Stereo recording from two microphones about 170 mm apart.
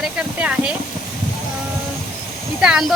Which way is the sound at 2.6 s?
5° right (ahead or behind).